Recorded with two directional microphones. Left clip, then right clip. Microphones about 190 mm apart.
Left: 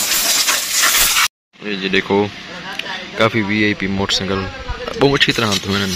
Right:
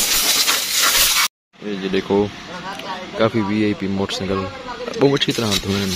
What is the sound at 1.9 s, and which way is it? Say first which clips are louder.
Speech: left 3 dB; 5° left (ahead or behind).